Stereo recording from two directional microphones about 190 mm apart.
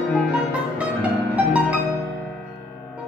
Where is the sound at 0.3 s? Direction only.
5° right (ahead or behind).